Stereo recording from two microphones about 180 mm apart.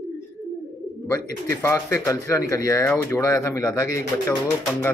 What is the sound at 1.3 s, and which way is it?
Speech, 15° left (ahead or behind).